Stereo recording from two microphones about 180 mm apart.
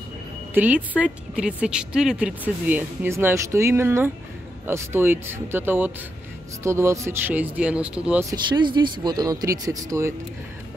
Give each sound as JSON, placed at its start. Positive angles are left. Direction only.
{"t": 0.6, "sound": "a woman's voice", "side_deg": -10}
{"t": 8.3, "sound": "speech", "side_deg": -25}